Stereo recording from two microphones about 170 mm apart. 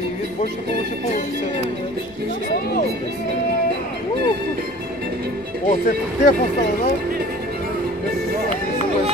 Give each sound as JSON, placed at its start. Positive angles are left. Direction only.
{"t": 5.7, "sound": "speech", "side_deg": 50}